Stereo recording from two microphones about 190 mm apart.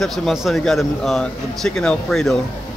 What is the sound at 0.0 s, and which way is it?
A man's voice, centre (ahead or behind).